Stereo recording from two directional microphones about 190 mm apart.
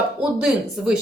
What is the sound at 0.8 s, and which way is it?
Speech, 5° right (ahead or behind).